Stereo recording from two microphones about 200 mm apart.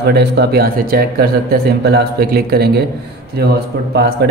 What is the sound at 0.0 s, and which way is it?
A man's voice, 55° right (ahead or behind).